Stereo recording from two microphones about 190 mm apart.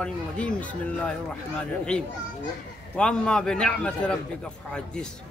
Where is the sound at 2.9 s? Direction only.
5° left (ahead or behind).